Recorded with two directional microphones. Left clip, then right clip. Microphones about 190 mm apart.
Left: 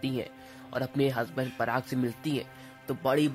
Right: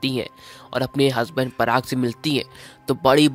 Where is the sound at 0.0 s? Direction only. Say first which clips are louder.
Right 9 dB; 30° right (ahead or behind).